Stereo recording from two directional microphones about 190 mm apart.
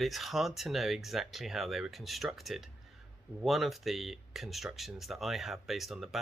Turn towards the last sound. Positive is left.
turn(degrees=0)  # may be behind; listen again after turning